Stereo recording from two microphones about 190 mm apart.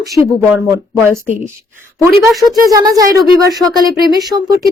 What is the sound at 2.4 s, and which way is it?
Speech, 20° right (ahead or behind).